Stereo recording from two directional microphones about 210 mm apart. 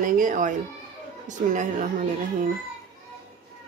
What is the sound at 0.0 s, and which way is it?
Speech, 40° right (ahead or behind).